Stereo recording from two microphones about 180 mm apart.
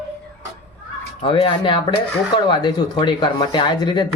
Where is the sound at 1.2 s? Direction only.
30° left (ahead or behind).